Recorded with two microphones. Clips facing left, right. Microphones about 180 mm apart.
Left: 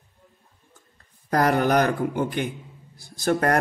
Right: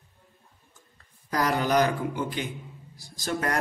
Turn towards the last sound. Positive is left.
turn(degrees=55)  # may be behind; listen again after turning